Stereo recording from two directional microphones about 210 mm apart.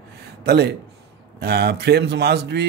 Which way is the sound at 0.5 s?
50° right (ahead or behind).